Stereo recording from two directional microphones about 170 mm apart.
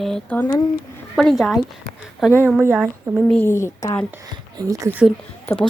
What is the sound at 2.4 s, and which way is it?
Speech, 10° right (ahead or behind).